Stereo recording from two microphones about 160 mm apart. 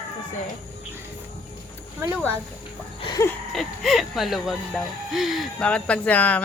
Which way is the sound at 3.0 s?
25° left (ahead or behind).